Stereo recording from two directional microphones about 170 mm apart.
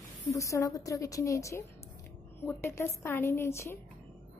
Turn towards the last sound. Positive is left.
turn(degrees=15)  # may be behind; listen again after turning